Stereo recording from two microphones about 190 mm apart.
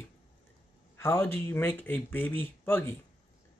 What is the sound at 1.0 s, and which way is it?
A man's voice, 15° left (ahead or behind).